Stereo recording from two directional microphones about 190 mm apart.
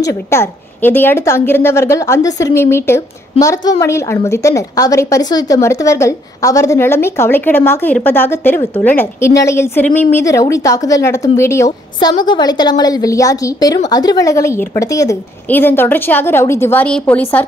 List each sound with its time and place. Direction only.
0.0 s a woman's voice: 15° left (ahead or behind)